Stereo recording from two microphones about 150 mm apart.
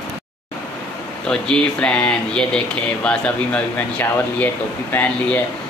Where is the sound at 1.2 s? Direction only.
5° left (ahead or behind).